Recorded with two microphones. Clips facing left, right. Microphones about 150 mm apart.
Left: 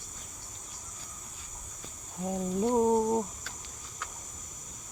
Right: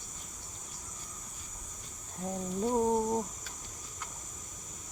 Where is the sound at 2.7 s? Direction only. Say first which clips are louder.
Left 3 dB; 15° left (ahead or behind).